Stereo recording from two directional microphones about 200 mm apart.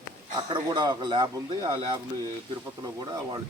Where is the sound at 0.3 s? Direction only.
20° right (ahead or behind).